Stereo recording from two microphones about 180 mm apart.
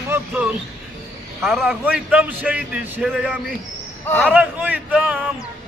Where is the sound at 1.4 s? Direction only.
Centre (ahead or behind).